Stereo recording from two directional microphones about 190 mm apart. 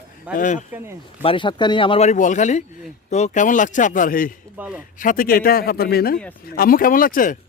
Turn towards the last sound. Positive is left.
turn(degrees=45)  # may be behind; listen again after turning